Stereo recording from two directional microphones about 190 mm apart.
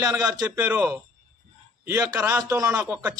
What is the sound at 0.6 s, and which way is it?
Speech, 5° right (ahead or behind).